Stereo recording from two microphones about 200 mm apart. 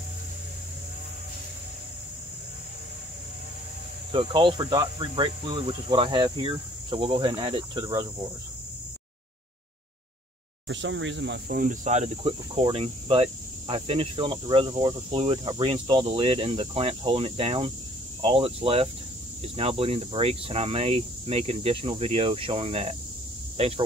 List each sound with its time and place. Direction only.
4.1 s speech: 25° right (ahead or behind)
10.7 s speech: 65° right (ahead or behind); by 23.7 s 30° right (ahead or behind)